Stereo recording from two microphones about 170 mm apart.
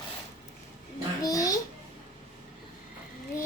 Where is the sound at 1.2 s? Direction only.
20° left (ahead or behind).